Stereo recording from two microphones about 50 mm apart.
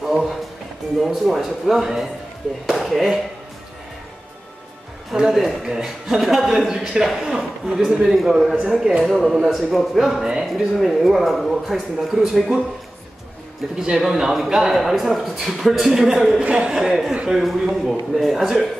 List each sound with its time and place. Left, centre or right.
0.0 s a man's voice: centre
5.1 s a man's voice: centre
10.2 s a man's voice: centre
10.5 s a man's voice: centre
13.7 s a man's voice: centre
16.4 s a man's voice: right
17.3 s a man's voice: centre